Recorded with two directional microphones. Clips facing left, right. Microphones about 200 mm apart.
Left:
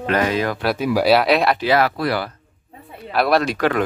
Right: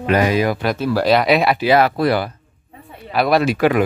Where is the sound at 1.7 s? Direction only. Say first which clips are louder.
Right 6 dB; 20° right (ahead or behind).